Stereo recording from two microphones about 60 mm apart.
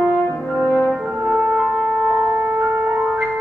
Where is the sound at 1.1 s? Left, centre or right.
Centre.